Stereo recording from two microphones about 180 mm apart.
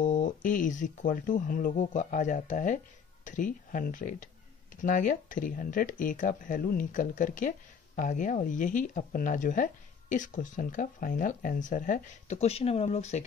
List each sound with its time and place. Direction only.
0.0 s speech: 45° left (ahead or behind)